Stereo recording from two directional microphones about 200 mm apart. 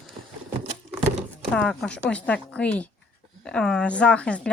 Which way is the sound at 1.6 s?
5° left (ahead or behind).